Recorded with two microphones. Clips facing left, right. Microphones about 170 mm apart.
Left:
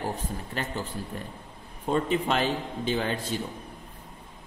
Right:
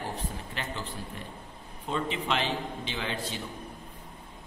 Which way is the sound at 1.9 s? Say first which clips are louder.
Left 5 dB; 45° left (ahead or behind).